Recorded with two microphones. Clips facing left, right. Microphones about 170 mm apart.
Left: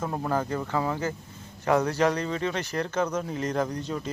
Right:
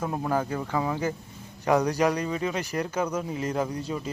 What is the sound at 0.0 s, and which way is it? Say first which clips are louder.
Speech: right 1 dB; 10° right (ahead or behind).